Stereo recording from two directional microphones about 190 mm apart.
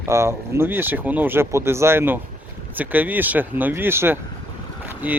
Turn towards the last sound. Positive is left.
turn(degrees=-10)  # may be behind; listen again after turning